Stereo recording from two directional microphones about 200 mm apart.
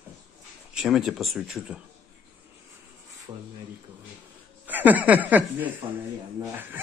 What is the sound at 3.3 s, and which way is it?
Speech, 25° right (ahead or behind).